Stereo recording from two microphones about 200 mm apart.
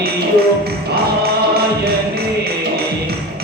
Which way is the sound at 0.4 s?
50° right (ahead or behind).